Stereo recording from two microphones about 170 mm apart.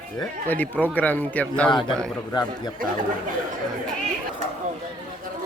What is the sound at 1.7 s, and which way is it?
Speech, 25° left (ahead or behind).